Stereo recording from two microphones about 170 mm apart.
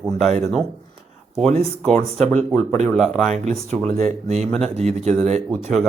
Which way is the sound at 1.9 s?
45° right (ahead or behind).